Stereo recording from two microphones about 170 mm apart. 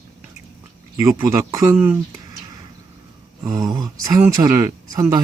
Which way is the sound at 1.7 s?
5° right (ahead or behind).